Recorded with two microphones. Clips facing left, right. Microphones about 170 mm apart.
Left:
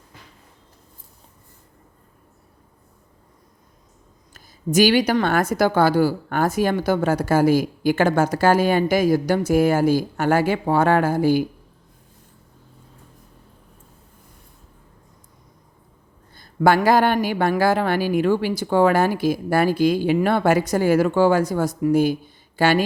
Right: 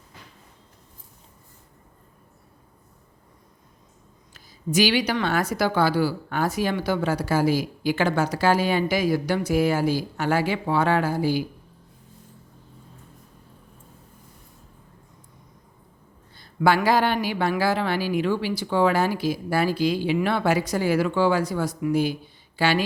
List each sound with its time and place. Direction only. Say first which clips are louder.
4.4 s a woman's voice: left 5 dB; 45° left (ahead or behind)
16.3 s a woman's voice: left 3 dB; 45° left (ahead or behind)